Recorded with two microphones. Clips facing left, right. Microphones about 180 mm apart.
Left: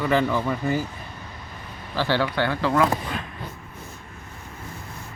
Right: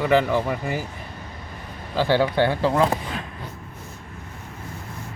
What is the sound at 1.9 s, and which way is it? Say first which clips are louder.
Speech: right 4 dB; 15° right (ahead or behind).